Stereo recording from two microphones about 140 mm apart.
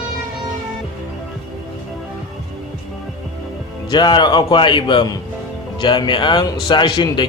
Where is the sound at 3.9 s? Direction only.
35° left (ahead or behind).